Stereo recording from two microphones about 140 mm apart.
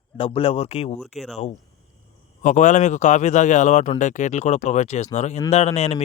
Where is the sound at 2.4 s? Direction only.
60° left (ahead or behind).